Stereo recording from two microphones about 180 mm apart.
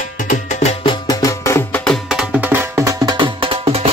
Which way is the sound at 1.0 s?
20° left (ahead or behind).